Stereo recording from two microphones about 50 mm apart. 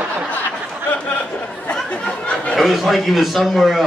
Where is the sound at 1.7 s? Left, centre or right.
Left.